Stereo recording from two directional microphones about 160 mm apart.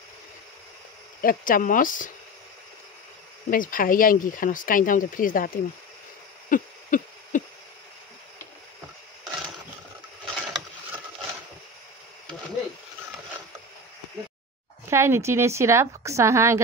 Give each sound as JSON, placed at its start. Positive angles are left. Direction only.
{"t": 1.2, "sound": "speech", "side_deg": 60}
{"t": 3.4, "sound": "speech", "side_deg": 60}
{"t": 6.5, "sound": "hoot", "side_deg": 55}
{"t": 10.2, "sound": "a sound", "side_deg": 0}
{"t": 14.9, "sound": "a woman's voice", "side_deg": -15}